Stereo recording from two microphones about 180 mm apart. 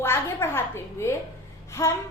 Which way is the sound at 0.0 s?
15° left (ahead or behind).